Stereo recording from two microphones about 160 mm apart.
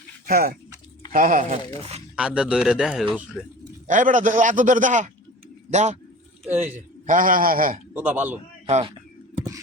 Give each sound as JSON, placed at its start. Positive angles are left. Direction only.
{"t": 0.3, "sound": "speech", "side_deg": -70}
{"t": 1.1, "sound": "a man's voice", "side_deg": -60}
{"t": 2.1, "sound": "speech", "side_deg": -5}
{"t": 3.8, "sound": "a man's voice", "side_deg": -55}
{"t": 6.5, "sound": "speech", "side_deg": -15}
{"t": 7.1, "sound": "a man's voice", "side_deg": -60}
{"t": 7.9, "sound": "speech", "side_deg": -10}
{"t": 8.6, "sound": "speech", "side_deg": -35}
{"t": 9.3, "sound": "a sound", "side_deg": -20}